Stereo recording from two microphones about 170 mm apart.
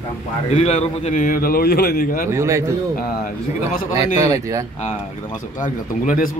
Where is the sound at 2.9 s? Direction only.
55° left (ahead or behind).